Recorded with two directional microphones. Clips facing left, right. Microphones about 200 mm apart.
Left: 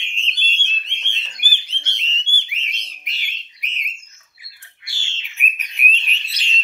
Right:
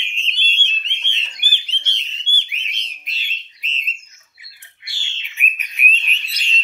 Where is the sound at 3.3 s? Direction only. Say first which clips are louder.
Right 1 dB; 15° left (ahead or behind).